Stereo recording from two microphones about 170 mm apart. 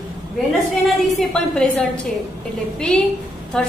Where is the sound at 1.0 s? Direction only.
Centre (ahead or behind).